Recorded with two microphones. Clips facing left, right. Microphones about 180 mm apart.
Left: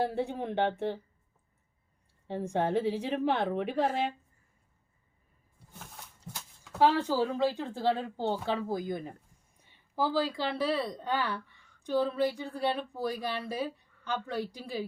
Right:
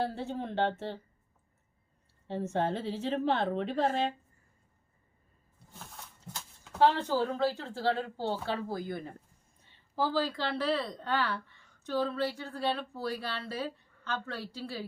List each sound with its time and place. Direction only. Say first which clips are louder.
0.0 s speech: left 3 dB; 15° left (ahead or behind)
2.2 s speech: left 1 dB; 15° left (ahead or behind)
6.7 s a woman's voice: left 1 dB; 10° left (ahead or behind)